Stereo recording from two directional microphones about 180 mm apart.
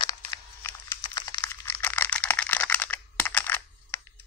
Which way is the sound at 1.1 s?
20° left (ahead or behind).